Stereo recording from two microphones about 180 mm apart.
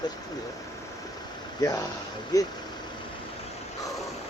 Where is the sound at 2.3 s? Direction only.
20° left (ahead or behind).